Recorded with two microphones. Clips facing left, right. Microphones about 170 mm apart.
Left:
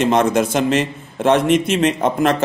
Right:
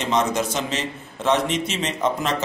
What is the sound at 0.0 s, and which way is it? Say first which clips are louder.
Speech: left 7 dB; 55° left (ahead or behind).